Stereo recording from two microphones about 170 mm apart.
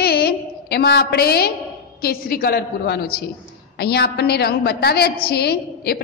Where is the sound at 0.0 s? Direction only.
65° left (ahead or behind).